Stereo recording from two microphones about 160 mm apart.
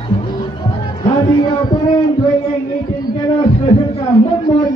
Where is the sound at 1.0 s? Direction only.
30° left (ahead or behind).